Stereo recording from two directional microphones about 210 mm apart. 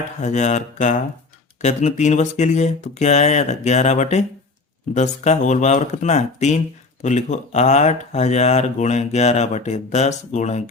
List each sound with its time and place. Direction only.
0.2 s speech: 35° left (ahead or behind)